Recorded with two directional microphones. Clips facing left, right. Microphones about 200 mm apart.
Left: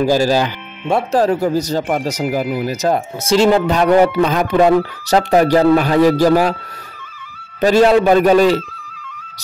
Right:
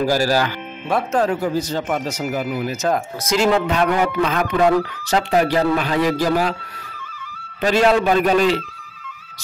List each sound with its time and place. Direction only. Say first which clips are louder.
0.0 s speech: left 4 dB; 20° left (ahead or behind); by 6.3 s 40° left (ahead or behind)
7.6 s speech: left 5 dB; 40° left (ahead or behind)